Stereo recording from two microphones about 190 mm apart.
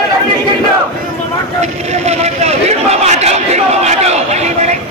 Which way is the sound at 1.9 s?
35° right (ahead or behind).